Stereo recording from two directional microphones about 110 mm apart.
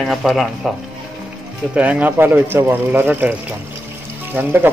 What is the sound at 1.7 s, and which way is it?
Speech, 15° right (ahead or behind).